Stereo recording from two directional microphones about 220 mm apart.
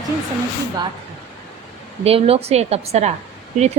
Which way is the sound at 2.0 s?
25° right (ahead or behind).